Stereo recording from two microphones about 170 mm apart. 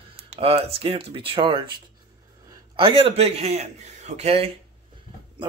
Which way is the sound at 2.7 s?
35° right (ahead or behind).